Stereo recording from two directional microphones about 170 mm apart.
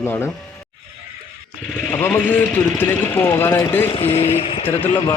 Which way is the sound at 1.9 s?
10° left (ahead or behind).